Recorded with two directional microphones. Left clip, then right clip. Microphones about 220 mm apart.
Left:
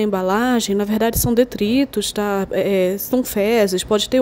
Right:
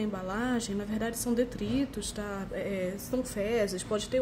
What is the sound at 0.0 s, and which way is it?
Speech, 40° left (ahead or behind).